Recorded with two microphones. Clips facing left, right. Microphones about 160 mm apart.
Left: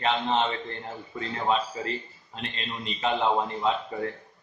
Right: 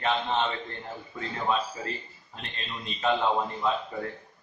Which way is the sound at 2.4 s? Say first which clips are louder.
Left 4 dB; 20° left (ahead or behind).